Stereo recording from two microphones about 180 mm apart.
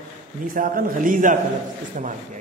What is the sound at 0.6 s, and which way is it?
Speech, 50° right (ahead or behind).